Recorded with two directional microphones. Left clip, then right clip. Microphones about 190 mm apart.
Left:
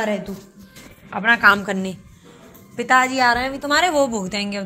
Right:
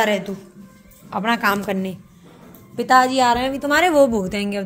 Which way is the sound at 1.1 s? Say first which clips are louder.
Left 5 dB; 30° right (ahead or behind).